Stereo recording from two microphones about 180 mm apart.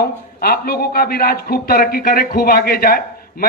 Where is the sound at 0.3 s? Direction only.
55° left (ahead or behind).